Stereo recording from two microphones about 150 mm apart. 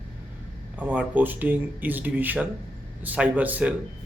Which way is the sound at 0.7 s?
10° right (ahead or behind).